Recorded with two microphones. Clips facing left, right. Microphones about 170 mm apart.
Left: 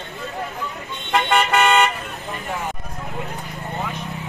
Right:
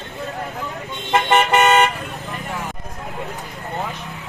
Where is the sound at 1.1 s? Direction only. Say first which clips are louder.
Right 2 dB; 20° right (ahead or behind).